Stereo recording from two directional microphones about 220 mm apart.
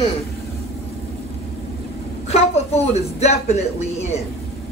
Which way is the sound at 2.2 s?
30° left (ahead or behind).